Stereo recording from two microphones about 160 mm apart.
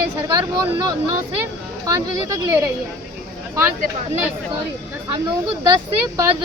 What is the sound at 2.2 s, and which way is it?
Speech, 20° right (ahead or behind).